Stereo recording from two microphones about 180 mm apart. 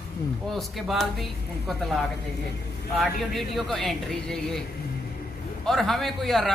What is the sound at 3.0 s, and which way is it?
Speech, centre (ahead or behind).